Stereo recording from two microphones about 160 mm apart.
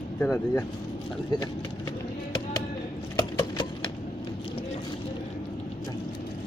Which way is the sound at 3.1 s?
30° left (ahead or behind).